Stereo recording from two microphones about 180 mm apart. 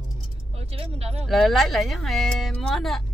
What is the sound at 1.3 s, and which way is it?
Speech, centre (ahead or behind).